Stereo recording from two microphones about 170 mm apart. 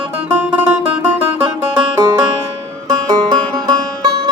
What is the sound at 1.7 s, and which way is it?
Banjo, 15° right (ahead or behind).